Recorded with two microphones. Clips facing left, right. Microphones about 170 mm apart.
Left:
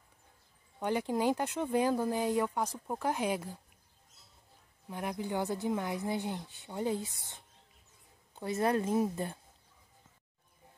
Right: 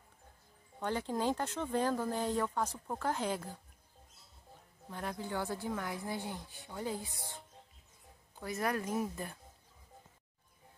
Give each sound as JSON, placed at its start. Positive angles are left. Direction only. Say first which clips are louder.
{"t": 0.7, "sound": "speech", "louder": "left 4 dB", "side_deg": 15}
{"t": 4.8, "sound": "speech", "louder": "left 4 dB", "side_deg": 15}
{"t": 8.4, "sound": "speech", "louder": "left 5 dB", "side_deg": 25}